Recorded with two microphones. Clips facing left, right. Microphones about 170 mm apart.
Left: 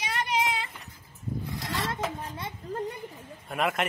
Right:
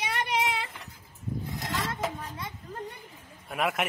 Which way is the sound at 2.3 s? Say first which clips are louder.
Left 4 dB; 30° left (ahead or behind).